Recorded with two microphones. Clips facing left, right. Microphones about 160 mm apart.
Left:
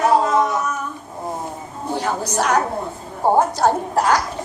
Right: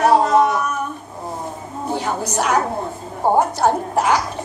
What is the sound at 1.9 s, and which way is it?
A woman's voice, 10° right (ahead or behind).